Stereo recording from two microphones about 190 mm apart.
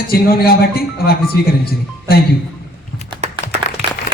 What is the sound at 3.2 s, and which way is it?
Applause, 35° right (ahead or behind).